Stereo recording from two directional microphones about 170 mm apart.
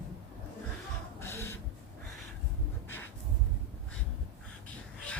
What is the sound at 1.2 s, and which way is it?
Printer, 15° left (ahead or behind).